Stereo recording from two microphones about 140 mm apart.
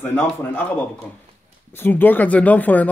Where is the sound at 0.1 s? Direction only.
15° left (ahead or behind).